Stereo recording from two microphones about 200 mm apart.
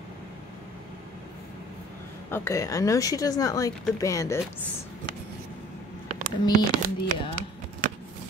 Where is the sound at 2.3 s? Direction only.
15° left (ahead or behind).